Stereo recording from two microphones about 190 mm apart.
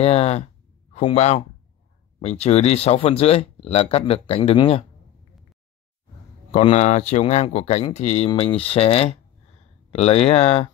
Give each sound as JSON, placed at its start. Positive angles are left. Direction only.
{"t": 0.0, "sound": "speech", "side_deg": 35}
{"t": 6.5, "sound": "speech", "side_deg": 35}